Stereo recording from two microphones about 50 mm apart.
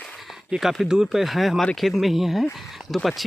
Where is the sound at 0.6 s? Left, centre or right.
Centre.